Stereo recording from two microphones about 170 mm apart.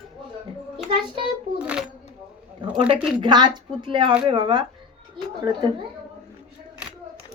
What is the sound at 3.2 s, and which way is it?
A woman's voice, 25° right (ahead or behind).